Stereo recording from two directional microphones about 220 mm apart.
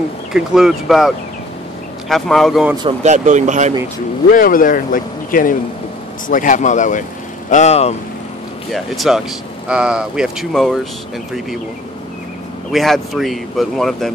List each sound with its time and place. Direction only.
0.3 s speech: 5° right (ahead or behind)
3.0 s speech: 35° right (ahead or behind)
4.3 s speech: 40° left (ahead or behind)
8.7 s speech: centre (ahead or behind)
12.7 s speech: centre (ahead or behind)